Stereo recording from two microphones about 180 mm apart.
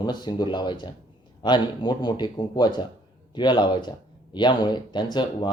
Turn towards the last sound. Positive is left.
turn(degrees=25)  # may be behind; listen again after turning